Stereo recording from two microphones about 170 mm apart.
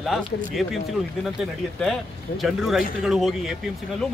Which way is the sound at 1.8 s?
Centre (ahead or behind).